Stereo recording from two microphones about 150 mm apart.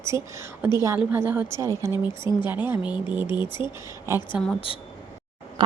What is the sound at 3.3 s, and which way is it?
Speech, 30° left (ahead or behind).